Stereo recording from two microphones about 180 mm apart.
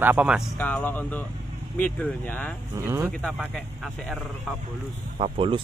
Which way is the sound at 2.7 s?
15° right (ahead or behind).